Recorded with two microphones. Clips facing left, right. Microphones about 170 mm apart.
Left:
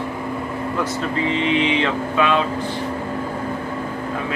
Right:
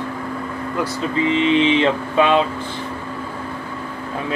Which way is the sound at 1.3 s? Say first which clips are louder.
Right 5 dB; 30° right (ahead or behind).